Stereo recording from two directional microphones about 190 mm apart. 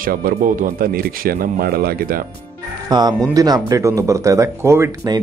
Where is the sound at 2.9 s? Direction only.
20° right (ahead or behind).